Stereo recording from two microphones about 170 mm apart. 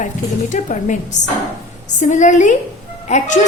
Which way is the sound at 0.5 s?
45° left (ahead or behind).